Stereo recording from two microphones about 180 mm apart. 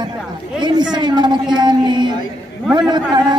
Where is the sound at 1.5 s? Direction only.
25° right (ahead or behind).